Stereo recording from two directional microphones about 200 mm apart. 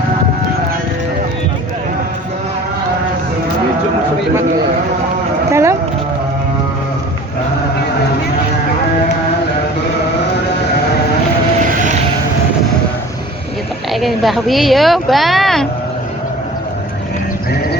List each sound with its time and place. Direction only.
5.5 s a sound: 15° right (ahead or behind)
11.6 s vehicle: 40° right (ahead or behind)
13.9 s speech: centre (ahead or behind)